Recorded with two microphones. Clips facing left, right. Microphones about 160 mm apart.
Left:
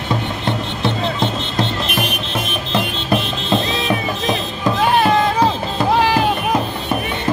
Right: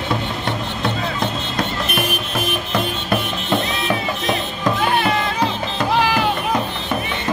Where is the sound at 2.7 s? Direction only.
20° left (ahead or behind).